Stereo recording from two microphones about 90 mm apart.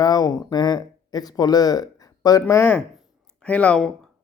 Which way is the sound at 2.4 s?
25° left (ahead or behind).